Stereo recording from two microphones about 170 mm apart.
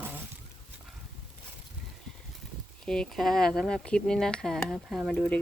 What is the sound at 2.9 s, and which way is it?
Speech, 5° left (ahead or behind).